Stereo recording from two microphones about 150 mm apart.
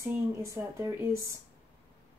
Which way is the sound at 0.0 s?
20° right (ahead or behind).